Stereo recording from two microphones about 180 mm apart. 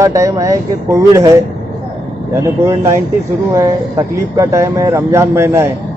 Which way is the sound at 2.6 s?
15° right (ahead or behind).